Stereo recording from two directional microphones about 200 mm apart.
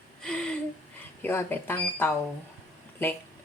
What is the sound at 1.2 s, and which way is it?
Speech, 10° left (ahead or behind).